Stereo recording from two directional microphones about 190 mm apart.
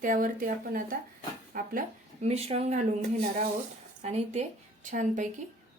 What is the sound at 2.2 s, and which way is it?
Speech, 35° right (ahead or behind).